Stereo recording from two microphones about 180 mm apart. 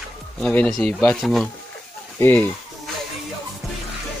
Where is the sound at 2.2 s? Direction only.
10° left (ahead or behind).